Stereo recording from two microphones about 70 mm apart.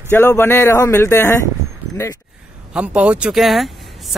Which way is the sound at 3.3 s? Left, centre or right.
Centre.